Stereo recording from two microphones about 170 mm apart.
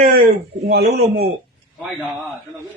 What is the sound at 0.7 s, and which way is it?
Speech, 75° right (ahead or behind).